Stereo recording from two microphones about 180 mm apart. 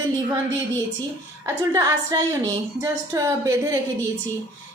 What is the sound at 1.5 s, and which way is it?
A woman's voice, 15° right (ahead or behind).